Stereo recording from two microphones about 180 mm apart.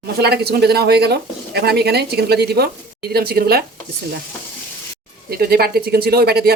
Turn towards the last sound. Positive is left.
turn(degrees=-60)  # may be behind; listen again after turning